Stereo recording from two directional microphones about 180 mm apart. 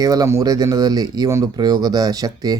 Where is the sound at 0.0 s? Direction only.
20° right (ahead or behind).